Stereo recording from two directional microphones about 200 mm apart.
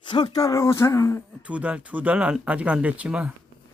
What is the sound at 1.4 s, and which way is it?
Speech, 5° right (ahead or behind).